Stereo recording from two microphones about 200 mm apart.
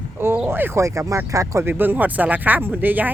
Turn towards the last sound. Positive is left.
turn(degrees=-10)  # may be behind; listen again after turning